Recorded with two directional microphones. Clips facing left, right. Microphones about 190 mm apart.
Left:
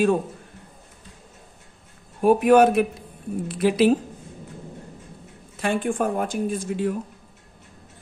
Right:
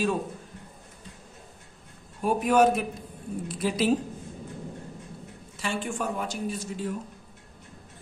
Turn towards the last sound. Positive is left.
turn(degrees=55)  # may be behind; listen again after turning